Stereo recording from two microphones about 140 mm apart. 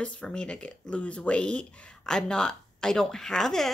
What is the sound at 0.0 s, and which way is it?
Speech, 10° left (ahead or behind).